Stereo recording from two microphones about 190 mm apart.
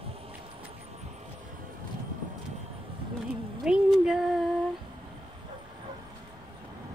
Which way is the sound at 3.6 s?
5° right (ahead or behind).